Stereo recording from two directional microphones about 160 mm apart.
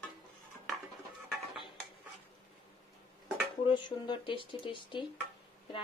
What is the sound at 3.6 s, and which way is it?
Speech, 30° left (ahead or behind).